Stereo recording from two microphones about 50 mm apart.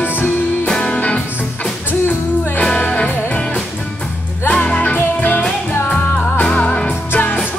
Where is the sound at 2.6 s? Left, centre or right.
Left.